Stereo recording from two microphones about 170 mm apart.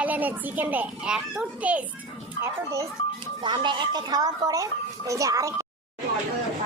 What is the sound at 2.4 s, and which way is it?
A woman's voice, 20° right (ahead or behind).